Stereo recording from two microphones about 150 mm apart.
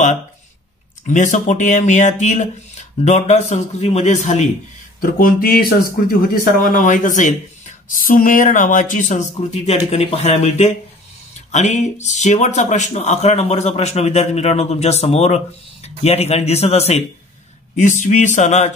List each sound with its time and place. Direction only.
1.0 s speech: 55° left (ahead or behind)
5.0 s speech: 80° left
6.6 s speech: 65° left (ahead or behind); by 17.0 s 45° left (ahead or behind)
17.7 s speech: 55° left (ahead or behind)